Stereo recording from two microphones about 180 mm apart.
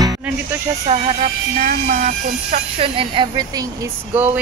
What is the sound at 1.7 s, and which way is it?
Speech, 45° right (ahead or behind).